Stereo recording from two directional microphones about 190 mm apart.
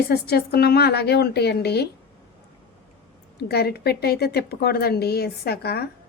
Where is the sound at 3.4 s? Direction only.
55° left (ahead or behind).